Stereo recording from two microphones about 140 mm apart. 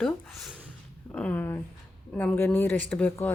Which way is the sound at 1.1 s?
10° left (ahead or behind).